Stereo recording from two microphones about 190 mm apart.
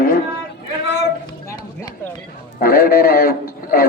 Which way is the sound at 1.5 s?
20° left (ahead or behind).